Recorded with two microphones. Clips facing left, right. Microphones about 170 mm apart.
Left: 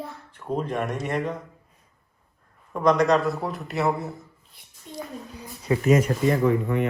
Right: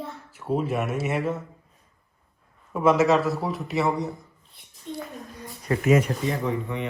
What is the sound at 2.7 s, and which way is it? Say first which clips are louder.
Speech: even; 5° right (ahead or behind).